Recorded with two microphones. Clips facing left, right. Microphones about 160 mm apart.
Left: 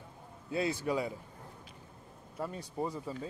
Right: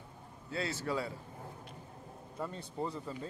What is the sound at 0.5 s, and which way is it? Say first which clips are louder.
Speech: left 4 dB; 15° left (ahead or behind).